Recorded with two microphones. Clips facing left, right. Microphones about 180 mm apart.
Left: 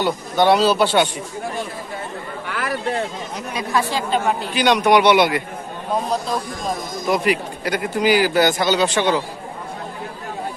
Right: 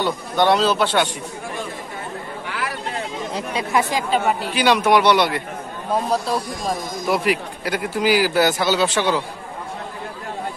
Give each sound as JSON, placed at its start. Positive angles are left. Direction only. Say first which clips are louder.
{"t": 0.0, "sound": "a man's voice", "louder": "left 1 dB", "side_deg": 5}
{"t": 3.3, "sound": "speech", "louder": "right 1 dB", "side_deg": -30}
{"t": 3.9, "sound": "a man's voice", "louder": "even", "side_deg": -5}